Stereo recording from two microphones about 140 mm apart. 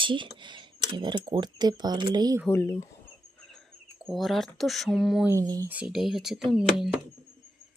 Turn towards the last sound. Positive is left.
turn(degrees=-5)  # may be behind; listen again after turning